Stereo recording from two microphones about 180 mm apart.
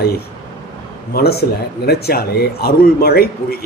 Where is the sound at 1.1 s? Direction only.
60° left (ahead or behind).